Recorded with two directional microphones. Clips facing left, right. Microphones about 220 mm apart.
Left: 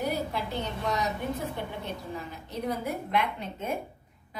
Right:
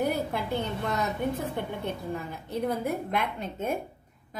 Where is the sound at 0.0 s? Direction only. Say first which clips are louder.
Right 2 dB; 55° right (ahead or behind).